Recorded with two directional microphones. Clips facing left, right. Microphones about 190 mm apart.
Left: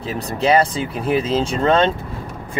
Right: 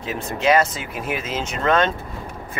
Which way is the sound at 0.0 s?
35° left (ahead or behind).